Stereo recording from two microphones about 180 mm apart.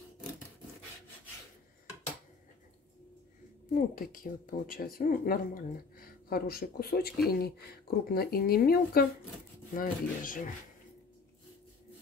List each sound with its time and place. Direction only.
3.7 s speech: 50° left (ahead or behind)